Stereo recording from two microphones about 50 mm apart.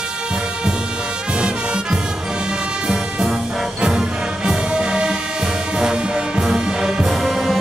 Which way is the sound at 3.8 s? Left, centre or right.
Centre.